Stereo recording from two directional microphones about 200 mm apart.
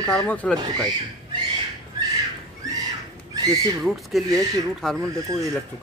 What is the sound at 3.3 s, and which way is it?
Speech, 20° right (ahead or behind).